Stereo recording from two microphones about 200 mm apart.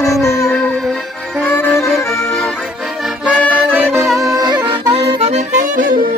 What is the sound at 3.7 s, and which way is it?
Music, 10° right (ahead or behind).